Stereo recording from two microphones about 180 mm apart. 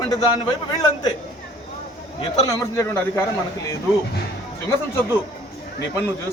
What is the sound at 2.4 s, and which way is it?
Speech, 15° left (ahead or behind).